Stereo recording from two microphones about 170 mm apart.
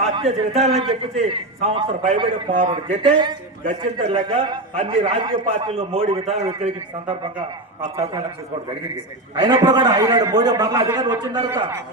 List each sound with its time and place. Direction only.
0.2 s a man's voice: 40° right (ahead or behind)
9.3 s a man's voice: 25° right (ahead or behind)